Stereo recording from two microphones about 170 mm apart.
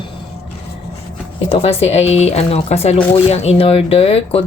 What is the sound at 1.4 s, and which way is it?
Speech, 35° left (ahead or behind).